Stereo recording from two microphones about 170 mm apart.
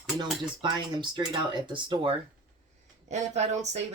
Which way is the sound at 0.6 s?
25° right (ahead or behind).